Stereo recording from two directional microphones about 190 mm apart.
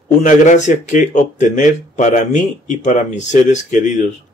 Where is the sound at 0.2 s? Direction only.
40° left (ahead or behind).